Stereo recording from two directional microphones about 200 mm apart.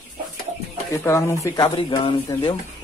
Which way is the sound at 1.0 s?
15° left (ahead or behind).